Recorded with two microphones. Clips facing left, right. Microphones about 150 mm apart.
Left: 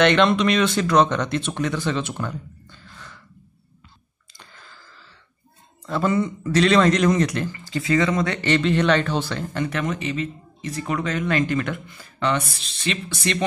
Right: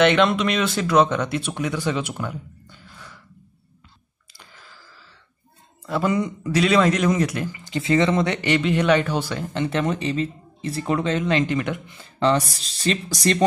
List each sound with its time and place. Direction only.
0.0 s speech: 5° right (ahead or behind)
4.3 s a sound: 5° right (ahead or behind)
5.9 s speech: 10° right (ahead or behind)
12.2 s speech: 35° right (ahead or behind)